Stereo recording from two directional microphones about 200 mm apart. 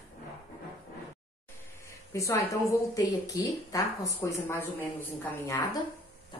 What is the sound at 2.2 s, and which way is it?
Speech, 15° left (ahead or behind).